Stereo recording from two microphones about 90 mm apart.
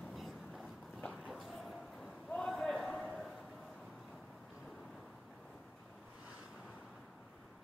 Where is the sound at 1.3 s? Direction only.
Centre (ahead or behind).